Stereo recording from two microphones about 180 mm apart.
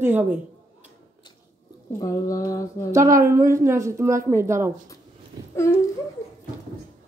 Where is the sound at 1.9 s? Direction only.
20° left (ahead or behind).